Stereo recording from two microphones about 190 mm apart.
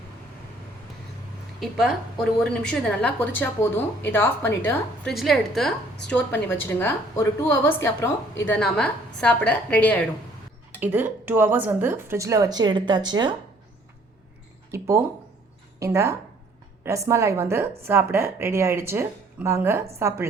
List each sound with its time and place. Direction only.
2.4 s a woman's voice: 5° left (ahead or behind)
5.1 s a woman's voice: centre (ahead or behind)
10.8 s a woman's voice: 10° right (ahead or behind)
14.7 s a woman's voice: 15° right (ahead or behind)